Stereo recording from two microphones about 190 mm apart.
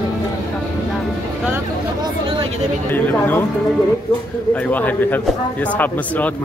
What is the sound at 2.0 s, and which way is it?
Chatter, 25° right (ahead or behind).